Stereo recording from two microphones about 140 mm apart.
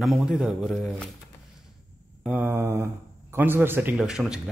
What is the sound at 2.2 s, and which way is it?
Speech, 10° right (ahead or behind).